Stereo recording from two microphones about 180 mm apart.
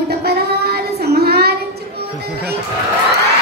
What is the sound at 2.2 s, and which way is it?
Music, 60° right (ahead or behind).